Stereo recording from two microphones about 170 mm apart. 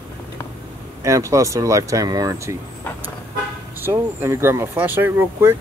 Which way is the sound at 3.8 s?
15° right (ahead or behind).